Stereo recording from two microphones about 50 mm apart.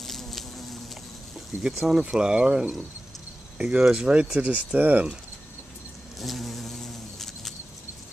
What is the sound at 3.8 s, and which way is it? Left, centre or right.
Speech, centre.